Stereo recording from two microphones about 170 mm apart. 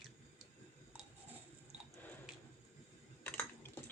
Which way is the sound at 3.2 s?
10° left (ahead or behind).